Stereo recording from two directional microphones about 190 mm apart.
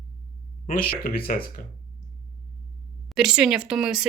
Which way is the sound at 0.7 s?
50° left (ahead or behind).